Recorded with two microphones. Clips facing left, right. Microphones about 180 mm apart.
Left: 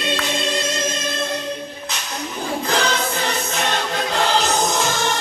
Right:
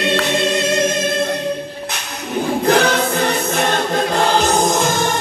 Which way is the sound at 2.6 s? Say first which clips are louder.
Right 7 dB; 60° right (ahead or behind).